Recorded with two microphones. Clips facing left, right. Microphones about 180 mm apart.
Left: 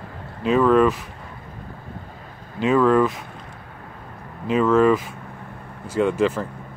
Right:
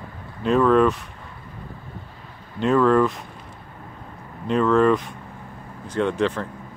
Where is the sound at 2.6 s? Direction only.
5° left (ahead or behind).